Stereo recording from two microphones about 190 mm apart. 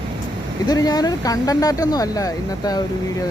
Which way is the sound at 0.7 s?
20° left (ahead or behind).